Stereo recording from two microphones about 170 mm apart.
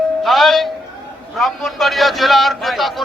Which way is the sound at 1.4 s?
Centre (ahead or behind).